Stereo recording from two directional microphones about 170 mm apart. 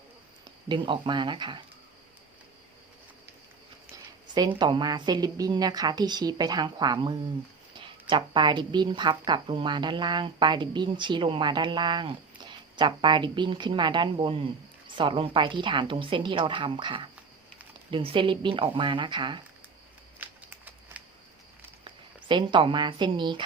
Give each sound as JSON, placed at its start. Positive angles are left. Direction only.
{"t": 0.4, "sound": "speech", "side_deg": -25}
{"t": 4.4, "sound": "a woman's voice", "side_deg": -25}
{"t": 20.2, "sound": "a sound", "side_deg": -10}
{"t": 21.8, "sound": "a woman's voice", "side_deg": -25}